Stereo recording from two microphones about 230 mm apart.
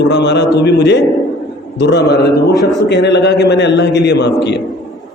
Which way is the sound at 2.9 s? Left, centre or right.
Left.